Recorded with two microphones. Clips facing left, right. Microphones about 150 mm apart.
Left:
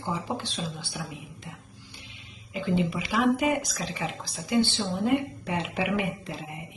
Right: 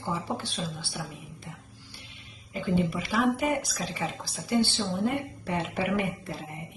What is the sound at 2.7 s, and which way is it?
Speech, 15° left (ahead or behind).